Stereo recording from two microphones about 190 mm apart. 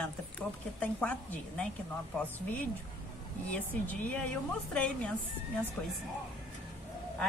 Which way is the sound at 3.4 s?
10° left (ahead or behind).